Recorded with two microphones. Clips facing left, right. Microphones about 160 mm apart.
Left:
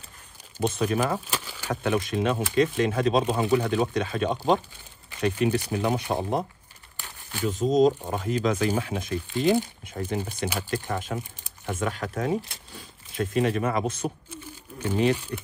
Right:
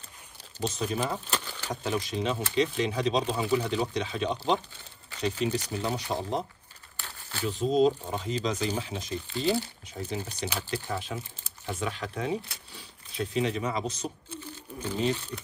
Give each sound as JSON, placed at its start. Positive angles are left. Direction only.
{"t": 0.6, "sound": "speech", "side_deg": 55}
{"t": 1.2, "sound": "a sound", "side_deg": 10}
{"t": 1.7, "sound": "speech", "side_deg": 60}
{"t": 7.0, "sound": "crumpling", "side_deg": 15}
{"t": 7.7, "sound": "speech", "side_deg": 45}
{"t": 14.8, "sound": "speech", "side_deg": 65}